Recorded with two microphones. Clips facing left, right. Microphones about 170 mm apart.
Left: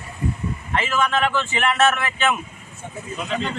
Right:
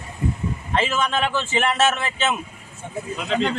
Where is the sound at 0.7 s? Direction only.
30° right (ahead or behind).